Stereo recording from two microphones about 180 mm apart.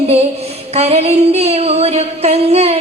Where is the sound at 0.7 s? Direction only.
35° right (ahead or behind).